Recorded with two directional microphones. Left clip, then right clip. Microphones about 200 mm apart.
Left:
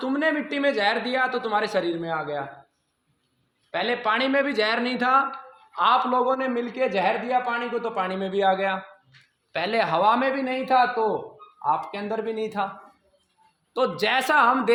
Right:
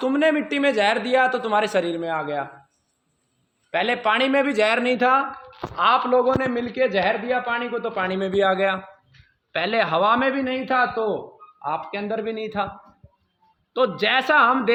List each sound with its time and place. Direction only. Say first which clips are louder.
0.0 s a man's voice: right 4 dB; 45° right (ahead or behind)
3.7 s a man's voice: right 3 dB; 45° right (ahead or behind)
13.7 s a man's voice: right 3 dB; 45° right (ahead or behind)